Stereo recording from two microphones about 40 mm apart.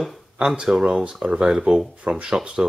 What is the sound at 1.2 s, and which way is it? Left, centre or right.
Speech, right.